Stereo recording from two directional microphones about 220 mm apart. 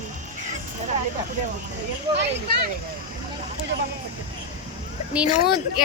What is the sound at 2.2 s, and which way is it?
Speech, 50° right (ahead or behind).